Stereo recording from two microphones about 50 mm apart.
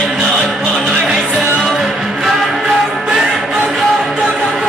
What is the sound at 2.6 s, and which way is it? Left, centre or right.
Music, centre.